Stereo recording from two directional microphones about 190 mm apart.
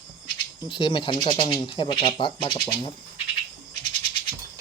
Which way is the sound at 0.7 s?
25° left (ahead or behind).